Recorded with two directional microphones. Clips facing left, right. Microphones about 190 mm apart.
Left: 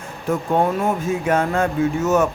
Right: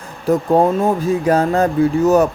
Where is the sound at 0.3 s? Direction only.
35° right (ahead or behind).